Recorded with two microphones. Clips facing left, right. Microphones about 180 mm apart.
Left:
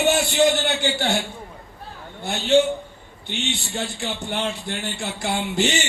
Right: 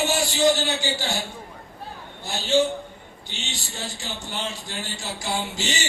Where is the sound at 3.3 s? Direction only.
60° left (ahead or behind).